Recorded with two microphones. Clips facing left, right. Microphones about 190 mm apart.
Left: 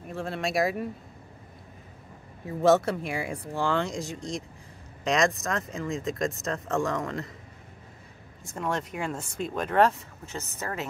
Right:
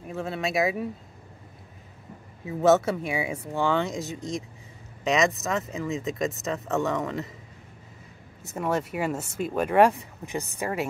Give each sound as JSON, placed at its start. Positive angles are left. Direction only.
{"t": 0.1, "sound": "speech", "side_deg": 0}
{"t": 2.4, "sound": "speech", "side_deg": 0}
{"t": 8.5, "sound": "speech", "side_deg": -5}